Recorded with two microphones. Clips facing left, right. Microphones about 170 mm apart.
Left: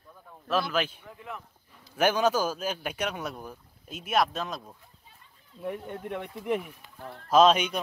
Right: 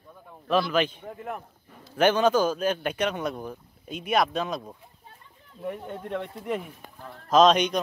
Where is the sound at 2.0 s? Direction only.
10° left (ahead or behind).